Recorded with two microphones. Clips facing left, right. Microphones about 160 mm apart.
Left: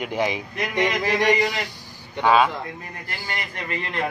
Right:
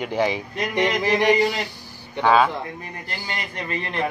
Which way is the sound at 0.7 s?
5° right (ahead or behind).